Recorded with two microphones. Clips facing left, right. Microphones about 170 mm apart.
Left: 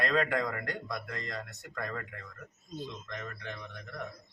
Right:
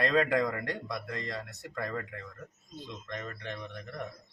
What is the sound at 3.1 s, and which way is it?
Speech, 20° right (ahead or behind).